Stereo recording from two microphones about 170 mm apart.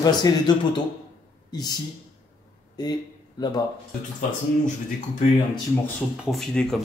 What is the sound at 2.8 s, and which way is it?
Speech, 25° left (ahead or behind).